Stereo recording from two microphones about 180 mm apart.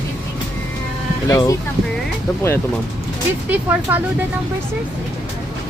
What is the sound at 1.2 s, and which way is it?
Speech, 20° left (ahead or behind).